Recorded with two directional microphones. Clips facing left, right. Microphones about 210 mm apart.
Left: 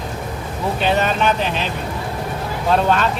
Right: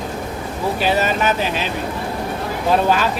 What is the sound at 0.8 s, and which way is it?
Speech, 5° right (ahead or behind).